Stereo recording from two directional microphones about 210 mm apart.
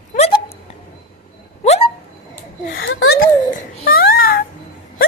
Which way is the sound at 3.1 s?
45° left (ahead or behind).